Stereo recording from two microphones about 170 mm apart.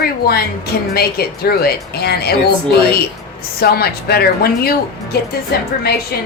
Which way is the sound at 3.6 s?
65° left (ahead or behind).